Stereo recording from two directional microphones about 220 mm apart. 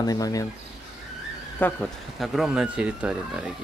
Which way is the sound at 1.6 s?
Centre (ahead or behind).